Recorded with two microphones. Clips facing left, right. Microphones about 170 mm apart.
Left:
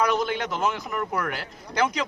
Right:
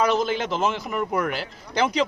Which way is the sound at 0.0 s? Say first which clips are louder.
Right 2 dB; 25° right (ahead or behind).